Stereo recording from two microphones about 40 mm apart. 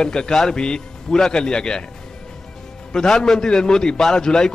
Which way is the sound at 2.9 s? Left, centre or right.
Centre.